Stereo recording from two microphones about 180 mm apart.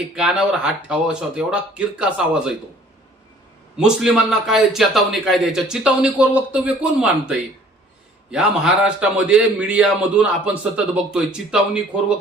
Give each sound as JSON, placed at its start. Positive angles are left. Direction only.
{"t": 0.2, "sound": "a man's voice", "side_deg": -5}
{"t": 3.8, "sound": "a man's voice", "side_deg": -5}